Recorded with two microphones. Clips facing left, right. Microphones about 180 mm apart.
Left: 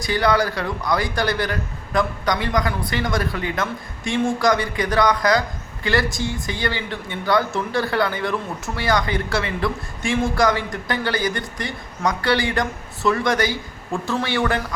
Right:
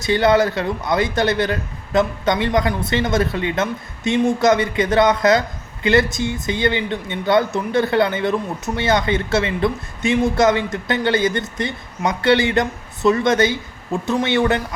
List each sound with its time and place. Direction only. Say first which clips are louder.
0.0 s speech: right 4 dB; 25° right (ahead or behind)